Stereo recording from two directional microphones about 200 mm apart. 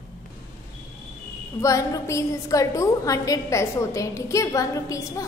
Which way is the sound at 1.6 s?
15° left (ahead or behind).